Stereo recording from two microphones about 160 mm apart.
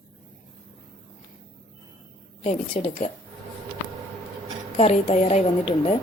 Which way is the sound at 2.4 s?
40° left (ahead or behind).